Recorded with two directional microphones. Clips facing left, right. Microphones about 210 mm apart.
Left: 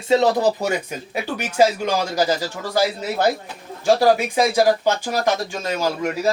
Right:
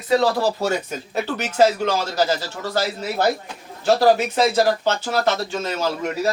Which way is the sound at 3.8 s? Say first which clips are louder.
Even; 10° left (ahead or behind).